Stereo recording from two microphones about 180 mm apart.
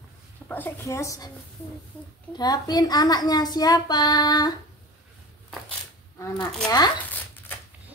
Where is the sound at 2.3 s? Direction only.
20° left (ahead or behind).